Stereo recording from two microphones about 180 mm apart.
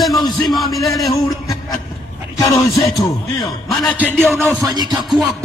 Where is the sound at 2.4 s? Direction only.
15° left (ahead or behind).